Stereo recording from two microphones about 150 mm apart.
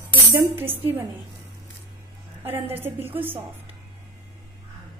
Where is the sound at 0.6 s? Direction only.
40° right (ahead or behind).